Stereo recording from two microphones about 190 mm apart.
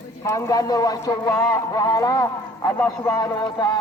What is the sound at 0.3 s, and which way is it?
A man's voice, 15° left (ahead or behind).